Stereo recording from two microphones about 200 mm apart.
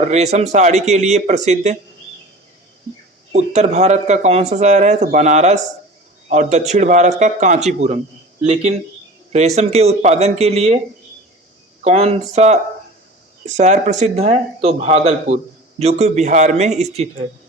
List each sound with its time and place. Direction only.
0.1 s speech: 35° right (ahead or behind)
3.3 s speech: 35° right (ahead or behind)
9.6 s speech: 30° right (ahead or behind)
11.8 s speech: 30° right (ahead or behind)